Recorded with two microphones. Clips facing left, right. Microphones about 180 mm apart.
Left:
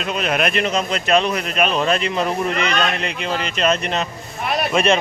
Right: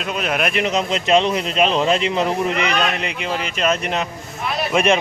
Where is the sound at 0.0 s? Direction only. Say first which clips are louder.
Left 1 dB; 5° right (ahead or behind).